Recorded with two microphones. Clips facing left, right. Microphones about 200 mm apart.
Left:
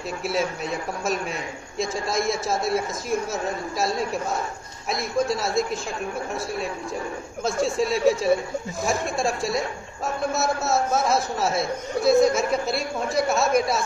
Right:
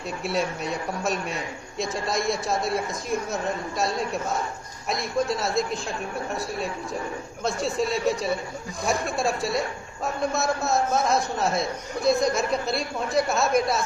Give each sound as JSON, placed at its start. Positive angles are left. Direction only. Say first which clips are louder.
{"t": 0.2, "sound": "a man's voice", "louder": "left 1 dB", "side_deg": 0}
{"t": 4.8, "sound": "a man's voice", "louder": "left 1 dB", "side_deg": 0}
{"t": 7.4, "sound": "a man's voice", "louder": "left 2 dB", "side_deg": 0}